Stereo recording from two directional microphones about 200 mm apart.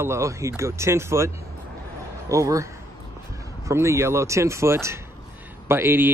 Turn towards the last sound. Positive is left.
turn(degrees=-10)  # may be behind; listen again after turning